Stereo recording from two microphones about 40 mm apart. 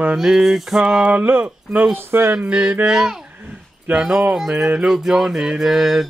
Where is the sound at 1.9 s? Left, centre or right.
Right.